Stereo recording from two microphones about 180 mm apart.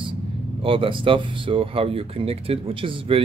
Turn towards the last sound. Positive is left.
turn(degrees=-30)  # may be behind; listen again after turning